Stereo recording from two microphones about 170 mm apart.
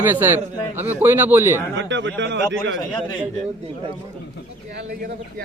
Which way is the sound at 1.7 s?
90° right.